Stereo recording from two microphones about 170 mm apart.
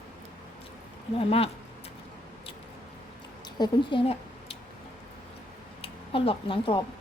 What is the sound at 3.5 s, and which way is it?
Speech, 25° left (ahead or behind).